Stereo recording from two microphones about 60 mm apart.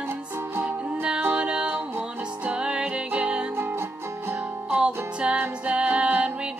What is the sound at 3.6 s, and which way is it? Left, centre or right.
Music, right.